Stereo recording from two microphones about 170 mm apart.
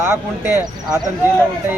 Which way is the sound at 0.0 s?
15° right (ahead or behind).